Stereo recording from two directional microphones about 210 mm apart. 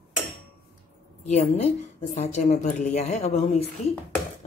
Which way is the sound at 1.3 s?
30° left (ahead or behind).